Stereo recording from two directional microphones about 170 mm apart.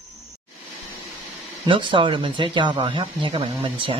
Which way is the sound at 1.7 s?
30° right (ahead or behind).